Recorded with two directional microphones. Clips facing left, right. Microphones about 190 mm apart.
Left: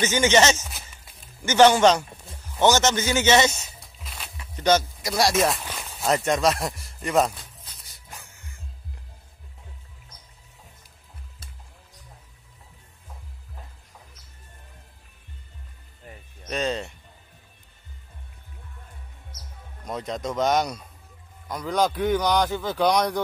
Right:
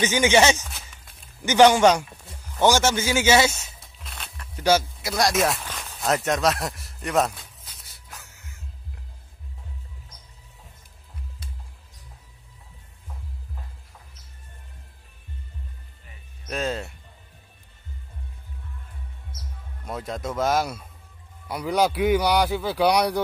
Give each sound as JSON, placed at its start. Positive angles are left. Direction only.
{"t": 0.0, "sound": "speech", "side_deg": -15}
{"t": 0.7, "sound": "speech", "side_deg": 10}
{"t": 1.4, "sound": "speech", "side_deg": -15}
{"t": 4.0, "sound": "music", "side_deg": 0}
{"t": 4.6, "sound": "speech", "side_deg": -10}
{"t": 5.7, "sound": "a sound", "side_deg": 15}
{"t": 5.9, "sound": "a man's voice", "side_deg": 0}
{"t": 16.4, "sound": "speech", "side_deg": -5}
{"t": 19.8, "sound": "speech", "side_deg": -5}